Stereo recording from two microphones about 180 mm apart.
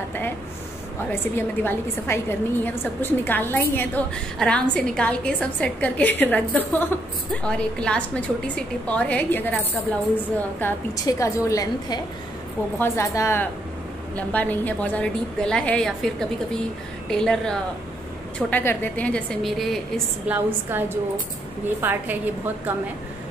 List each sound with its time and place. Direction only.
1.2 s a woman's voice: 10° left (ahead or behind)
10.6 s a woman's voice: 15° left (ahead or behind); by 19.8 s centre (ahead or behind)
20.2 s a woman's voice: 10° right (ahead or behind)